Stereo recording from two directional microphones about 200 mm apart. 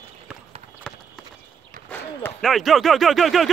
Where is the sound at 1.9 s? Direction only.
5° left (ahead or behind).